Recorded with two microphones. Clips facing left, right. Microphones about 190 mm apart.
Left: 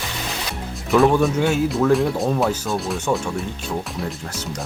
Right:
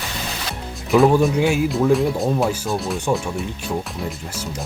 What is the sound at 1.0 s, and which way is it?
Speech, 15° right (ahead or behind).